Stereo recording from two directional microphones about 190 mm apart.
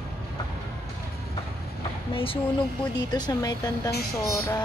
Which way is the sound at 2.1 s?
30° left (ahead or behind).